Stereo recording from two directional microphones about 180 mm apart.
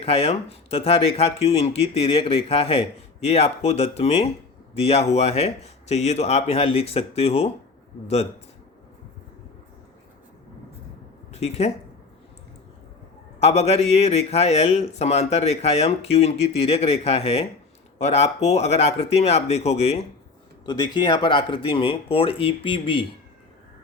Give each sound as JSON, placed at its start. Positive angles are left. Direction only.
{"t": 0.0, "sound": "speech", "side_deg": 35}
{"t": 11.3, "sound": "speech", "side_deg": 35}
{"t": 13.4, "sound": "speech", "side_deg": 35}
{"t": 20.7, "sound": "speech", "side_deg": 25}